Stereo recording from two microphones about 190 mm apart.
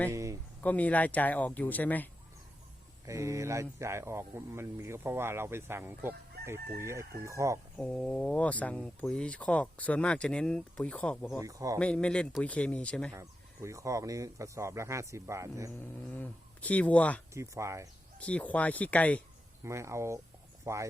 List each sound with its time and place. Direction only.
0.1 s speech: 15° right (ahead or behind)
0.6 s speech: 10° left (ahead or behind)
3.1 s speech: 15° right (ahead or behind)
7.8 s speech: 5° left (ahead or behind)
11.3 s speech: 15° right (ahead or behind)
11.8 s speech: 5° left (ahead or behind)
13.1 s speech: 15° right (ahead or behind)
16.0 s speech: 10° left (ahead or behind)
17.3 s speech: 15° right (ahead or behind)
18.2 s speech: 5° left (ahead or behind)
19.6 s speech: 15° right (ahead or behind)